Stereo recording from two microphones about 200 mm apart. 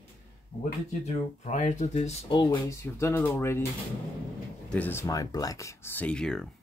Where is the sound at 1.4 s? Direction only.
40° left (ahead or behind).